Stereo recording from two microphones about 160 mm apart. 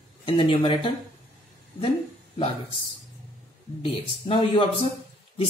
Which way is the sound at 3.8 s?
35° left (ahead or behind).